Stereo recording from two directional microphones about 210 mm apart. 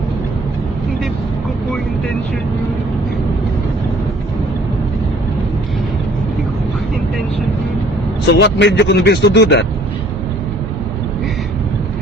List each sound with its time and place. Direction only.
8.2 s speech: 55° left (ahead or behind)